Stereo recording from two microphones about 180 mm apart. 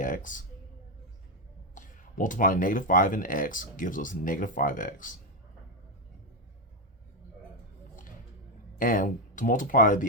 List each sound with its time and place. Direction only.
0.0 s speech: 45° left (ahead or behind)
1.7 s speech: 45° left (ahead or behind)
8.8 s speech: 50° left (ahead or behind)